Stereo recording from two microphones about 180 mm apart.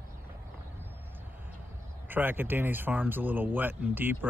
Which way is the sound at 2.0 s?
10° right (ahead or behind).